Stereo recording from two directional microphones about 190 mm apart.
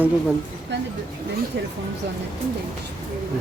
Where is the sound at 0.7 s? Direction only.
65° right (ahead or behind).